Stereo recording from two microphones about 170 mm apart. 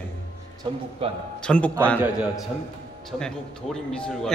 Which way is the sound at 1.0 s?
35° right (ahead or behind).